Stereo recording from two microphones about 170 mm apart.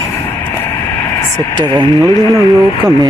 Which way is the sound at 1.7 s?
25° right (ahead or behind).